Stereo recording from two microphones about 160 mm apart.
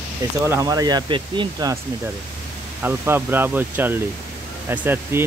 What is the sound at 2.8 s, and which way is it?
Speech, 15° right (ahead or behind).